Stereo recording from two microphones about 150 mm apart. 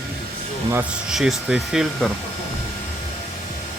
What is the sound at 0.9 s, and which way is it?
Speech, 5° right (ahead or behind).